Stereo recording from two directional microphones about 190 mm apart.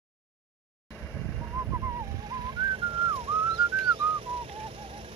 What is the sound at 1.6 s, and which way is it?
Whistling, 15° right (ahead or behind).